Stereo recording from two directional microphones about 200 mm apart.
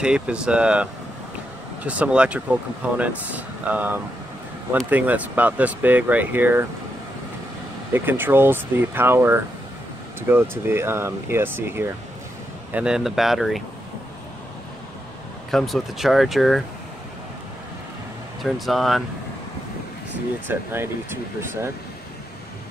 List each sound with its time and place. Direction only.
0.0 s speech: 5° right (ahead or behind)
7.9 s speech: 10° right (ahead or behind)
15.5 s speech: centre (ahead or behind)
18.4 s speech: centre (ahead or behind)
20.4 s speech: 10° right (ahead or behind)